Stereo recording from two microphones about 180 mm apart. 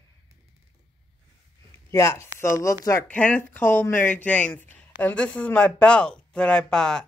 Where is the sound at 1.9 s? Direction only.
15° left (ahead or behind).